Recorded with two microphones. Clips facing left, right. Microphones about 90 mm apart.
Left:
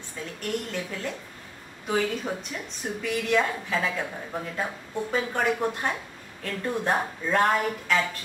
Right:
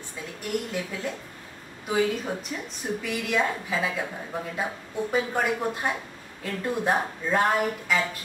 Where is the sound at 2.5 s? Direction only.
5° right (ahead or behind).